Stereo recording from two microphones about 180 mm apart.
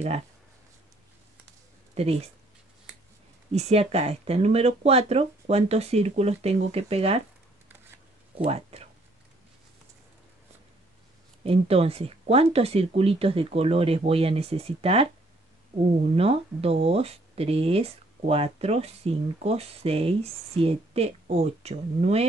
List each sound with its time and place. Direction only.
2.0 s speech: 35° right (ahead or behind)
3.5 s speech: 35° right (ahead or behind)
8.5 s speech: 35° right (ahead or behind)
11.4 s speech: 30° right (ahead or behind)
16.2 s speech: 35° right (ahead or behind)